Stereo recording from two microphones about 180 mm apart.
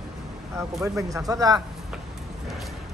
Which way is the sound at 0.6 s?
15° right (ahead or behind).